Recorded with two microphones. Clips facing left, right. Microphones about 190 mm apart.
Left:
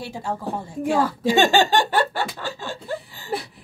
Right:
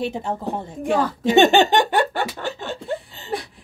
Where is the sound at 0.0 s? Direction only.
20° right (ahead or behind).